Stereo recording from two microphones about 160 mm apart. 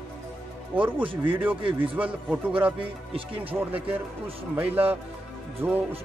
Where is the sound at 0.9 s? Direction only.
30° right (ahead or behind).